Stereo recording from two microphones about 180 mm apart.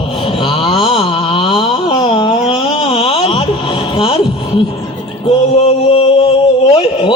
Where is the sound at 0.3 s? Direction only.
30° left (ahead or behind).